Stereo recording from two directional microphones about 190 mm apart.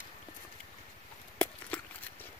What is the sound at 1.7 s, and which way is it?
Horse, 5° left (ahead or behind).